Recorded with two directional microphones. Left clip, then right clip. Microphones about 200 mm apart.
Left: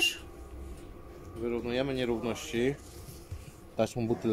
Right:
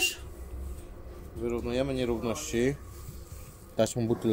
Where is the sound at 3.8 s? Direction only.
20° right (ahead or behind).